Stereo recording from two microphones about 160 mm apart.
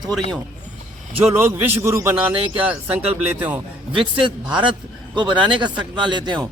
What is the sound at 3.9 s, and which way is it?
A man's voice, 30° right (ahead or behind).